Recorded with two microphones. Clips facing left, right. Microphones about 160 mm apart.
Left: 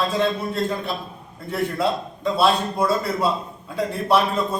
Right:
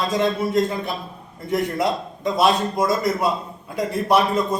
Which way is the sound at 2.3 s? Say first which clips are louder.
Right 1 dB; 15° right (ahead or behind).